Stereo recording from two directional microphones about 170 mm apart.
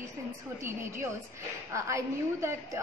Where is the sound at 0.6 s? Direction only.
15° right (ahead or behind).